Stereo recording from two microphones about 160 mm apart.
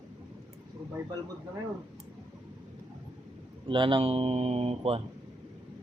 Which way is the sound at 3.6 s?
30° right (ahead or behind).